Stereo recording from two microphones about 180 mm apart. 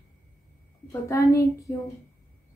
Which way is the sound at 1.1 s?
15° left (ahead or behind).